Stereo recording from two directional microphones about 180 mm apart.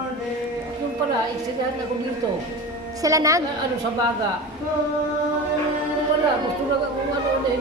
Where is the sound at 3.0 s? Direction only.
20° right (ahead or behind).